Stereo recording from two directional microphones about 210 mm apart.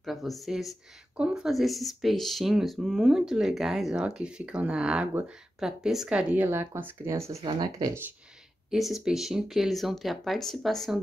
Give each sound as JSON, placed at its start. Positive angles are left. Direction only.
{"t": 0.0, "sound": "speech", "side_deg": 0}
{"t": 8.6, "sound": "speech", "side_deg": 0}